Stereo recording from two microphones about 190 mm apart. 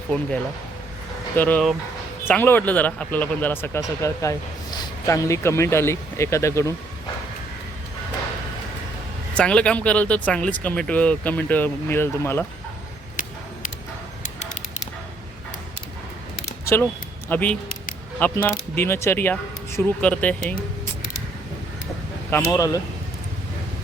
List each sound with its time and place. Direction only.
0.1 s speech: 5° left (ahead or behind)
9.3 s speech: 5° left (ahead or behind)
17.2 s speech: 10° left (ahead or behind)
22.3 s speech: 15° left (ahead or behind)